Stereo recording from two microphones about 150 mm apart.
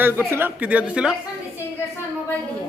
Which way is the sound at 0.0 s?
15° right (ahead or behind).